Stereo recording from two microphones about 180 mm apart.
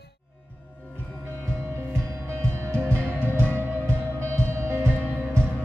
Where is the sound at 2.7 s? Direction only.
15° right (ahead or behind).